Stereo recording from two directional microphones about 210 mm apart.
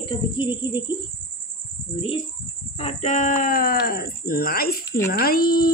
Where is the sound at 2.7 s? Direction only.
30° left (ahead or behind); by 5.7 s 45° left (ahead or behind).